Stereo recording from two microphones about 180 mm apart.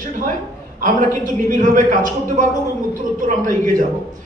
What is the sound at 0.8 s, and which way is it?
A man's voice, 45° right (ahead or behind).